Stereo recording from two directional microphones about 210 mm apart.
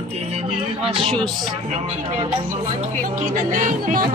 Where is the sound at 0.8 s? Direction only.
25° right (ahead or behind).